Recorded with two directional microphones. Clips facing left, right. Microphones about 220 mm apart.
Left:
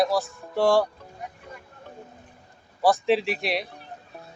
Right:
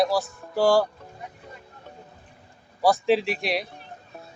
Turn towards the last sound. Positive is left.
turn(degrees=0)  # may be behind; listen again after turning